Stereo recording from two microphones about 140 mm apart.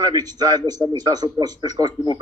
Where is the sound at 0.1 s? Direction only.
30° right (ahead or behind).